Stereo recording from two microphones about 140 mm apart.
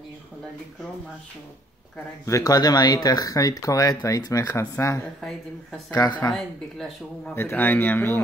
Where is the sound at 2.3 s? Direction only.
25° left (ahead or behind).